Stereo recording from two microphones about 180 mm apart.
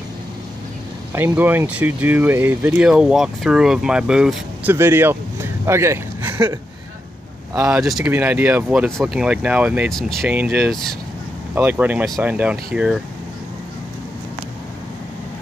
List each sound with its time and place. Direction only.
1.1 s speech: 10° right (ahead or behind)
7.5 s speech: 5° right (ahead or behind)
11.5 s speech: 10° right (ahead or behind)